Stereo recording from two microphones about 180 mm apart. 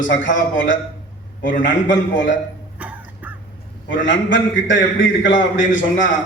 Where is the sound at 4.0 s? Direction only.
90° left.